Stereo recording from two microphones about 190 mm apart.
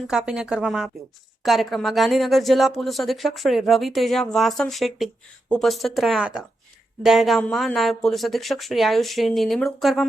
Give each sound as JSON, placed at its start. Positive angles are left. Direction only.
{"t": 0.1, "sound": "speech", "side_deg": -5}